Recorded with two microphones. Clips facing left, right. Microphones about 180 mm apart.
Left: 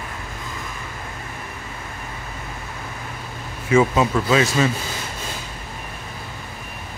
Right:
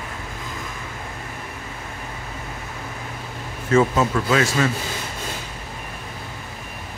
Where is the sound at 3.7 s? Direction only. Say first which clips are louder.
Left 1 dB; 15° left (ahead or behind).